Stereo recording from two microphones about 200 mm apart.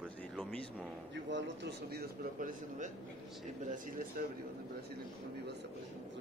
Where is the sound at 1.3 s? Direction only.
55° right (ahead or behind).